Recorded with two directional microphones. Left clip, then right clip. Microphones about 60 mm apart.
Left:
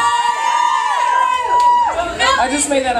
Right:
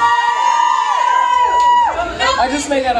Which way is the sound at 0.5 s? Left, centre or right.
Centre.